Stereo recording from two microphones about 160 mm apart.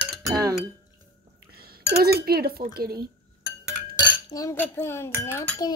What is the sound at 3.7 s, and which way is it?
Chink, 25° left (ahead or behind).